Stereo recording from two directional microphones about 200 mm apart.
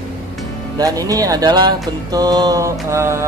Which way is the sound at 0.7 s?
15° right (ahead or behind).